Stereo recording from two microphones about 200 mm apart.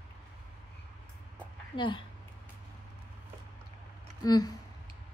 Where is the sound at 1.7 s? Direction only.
25° left (ahead or behind).